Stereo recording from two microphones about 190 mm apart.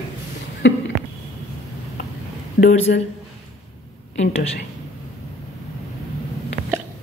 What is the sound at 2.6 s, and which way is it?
Speech, 40° left (ahead or behind).